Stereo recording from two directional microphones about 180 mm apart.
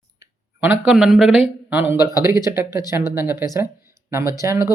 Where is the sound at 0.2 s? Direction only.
10° right (ahead or behind).